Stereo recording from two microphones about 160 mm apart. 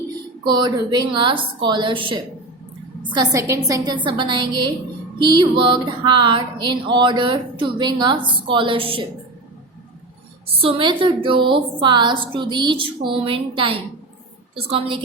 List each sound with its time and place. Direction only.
0.4 s a woman's voice: 25° right (ahead or behind)
10.4 s a woman's voice: 35° right (ahead or behind)